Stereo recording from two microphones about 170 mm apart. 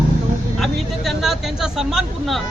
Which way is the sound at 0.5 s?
Centre (ahead or behind).